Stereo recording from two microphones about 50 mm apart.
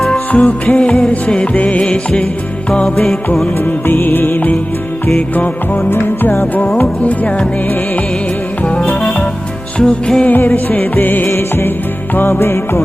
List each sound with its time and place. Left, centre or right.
0.3 s music: left
3.6 s music: left
5.9 s music: left
6.7 s music: left
8.6 s music: left
10.2 s music: left
11.3 s music: left